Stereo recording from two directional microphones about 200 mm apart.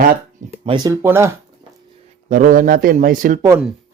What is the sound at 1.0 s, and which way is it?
Speech, 10° right (ahead or behind).